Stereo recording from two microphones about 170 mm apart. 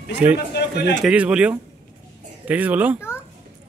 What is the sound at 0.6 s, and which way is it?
Speech, 75° left (ahead or behind).